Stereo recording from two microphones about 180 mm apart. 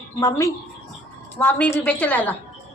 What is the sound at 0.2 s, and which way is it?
Speech, 20° left (ahead or behind).